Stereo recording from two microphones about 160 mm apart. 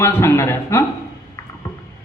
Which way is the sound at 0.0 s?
15° left (ahead or behind).